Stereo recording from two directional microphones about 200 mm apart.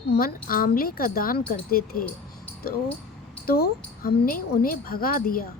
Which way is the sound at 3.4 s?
50° left (ahead or behind).